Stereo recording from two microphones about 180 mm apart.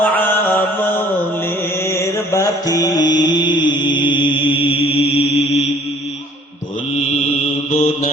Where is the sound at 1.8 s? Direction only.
15° left (ahead or behind).